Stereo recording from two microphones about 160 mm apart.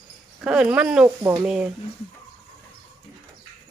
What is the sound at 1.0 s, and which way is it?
Speech, 20° right (ahead or behind).